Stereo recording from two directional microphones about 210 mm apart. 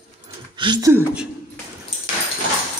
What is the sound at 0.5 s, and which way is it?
Speech, 20° right (ahead or behind).